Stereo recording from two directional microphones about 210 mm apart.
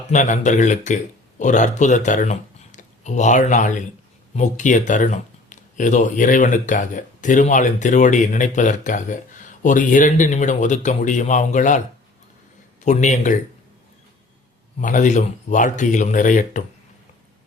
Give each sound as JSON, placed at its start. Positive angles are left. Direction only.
{"t": 0.1, "sound": "speech", "side_deg": 35}
{"t": 12.8, "sound": "speech", "side_deg": 35}
{"t": 14.8, "sound": "speech", "side_deg": 35}